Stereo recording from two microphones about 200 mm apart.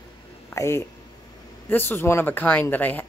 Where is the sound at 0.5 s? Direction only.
15° left (ahead or behind).